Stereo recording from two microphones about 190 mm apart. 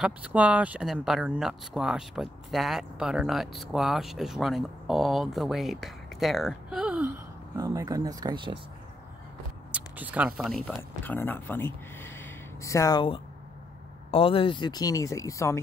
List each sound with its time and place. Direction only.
0.0 s speech: 5° right (ahead or behind)
7.5 s speech: 20° right (ahead or behind)
9.7 s speech: 10° right (ahead or behind)
10.8 s speech: 10° left (ahead or behind)